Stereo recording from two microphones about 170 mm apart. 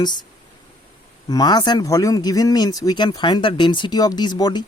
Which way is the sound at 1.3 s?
25° left (ahead or behind).